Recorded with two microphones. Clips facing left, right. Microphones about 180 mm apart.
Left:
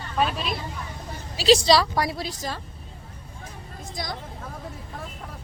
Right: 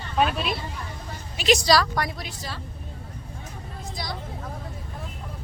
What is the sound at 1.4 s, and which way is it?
Speech, 30° left (ahead or behind).